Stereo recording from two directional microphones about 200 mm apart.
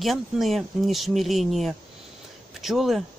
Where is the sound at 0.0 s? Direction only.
Centre (ahead or behind).